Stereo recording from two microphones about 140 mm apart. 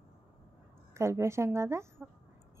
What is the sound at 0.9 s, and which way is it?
Speech, 20° right (ahead or behind).